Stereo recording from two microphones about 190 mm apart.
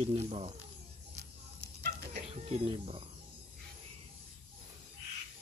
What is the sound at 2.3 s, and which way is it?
Speech, 30° right (ahead or behind).